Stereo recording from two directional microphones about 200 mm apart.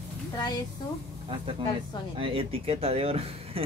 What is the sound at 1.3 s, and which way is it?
Speech, 25° right (ahead or behind).